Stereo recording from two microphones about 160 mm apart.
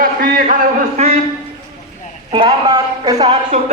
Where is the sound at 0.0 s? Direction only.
65° right (ahead or behind).